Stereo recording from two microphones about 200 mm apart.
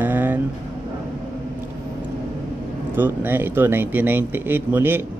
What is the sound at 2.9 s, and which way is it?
Speech, 10° right (ahead or behind).